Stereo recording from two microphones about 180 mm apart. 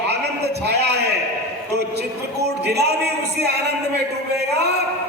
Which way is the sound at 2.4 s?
65° right (ahead or behind).